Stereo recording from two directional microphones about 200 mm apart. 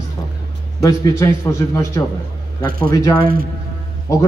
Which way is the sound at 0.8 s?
15° left (ahead or behind).